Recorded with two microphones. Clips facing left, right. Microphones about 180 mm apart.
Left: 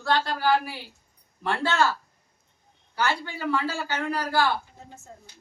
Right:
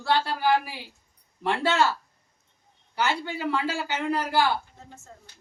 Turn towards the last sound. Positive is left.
turn(degrees=-15)  # may be behind; listen again after turning